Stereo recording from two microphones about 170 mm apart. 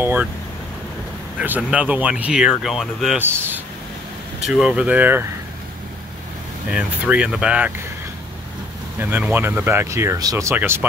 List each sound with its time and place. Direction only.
0.0 s speech: 10° right (ahead or behind)
1.4 s speech: 10° right (ahead or behind)
6.7 s speech: 5° right (ahead or behind)
9.0 s speech: 10° right (ahead or behind)